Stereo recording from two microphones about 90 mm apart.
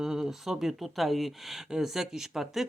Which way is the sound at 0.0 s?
5° right (ahead or behind).